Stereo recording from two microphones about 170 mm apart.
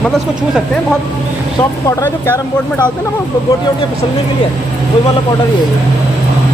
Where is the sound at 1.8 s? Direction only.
15° left (ahead or behind).